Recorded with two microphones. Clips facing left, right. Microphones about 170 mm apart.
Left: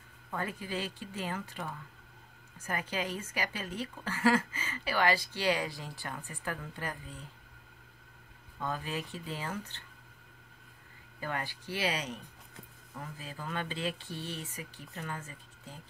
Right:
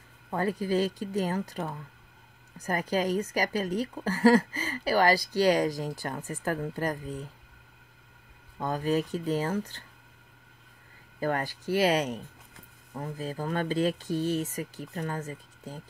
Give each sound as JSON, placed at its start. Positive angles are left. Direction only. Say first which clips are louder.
{"t": 0.3, "sound": "a woman's voice", "louder": "right 9 dB", "side_deg": -35}
{"t": 8.5, "sound": "a woman's voice", "louder": "right 9 dB", "side_deg": -40}
{"t": 11.1, "sound": "a woman's voice", "louder": "right 8 dB", "side_deg": -40}